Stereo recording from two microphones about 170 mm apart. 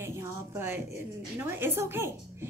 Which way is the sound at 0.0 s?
15° right (ahead or behind).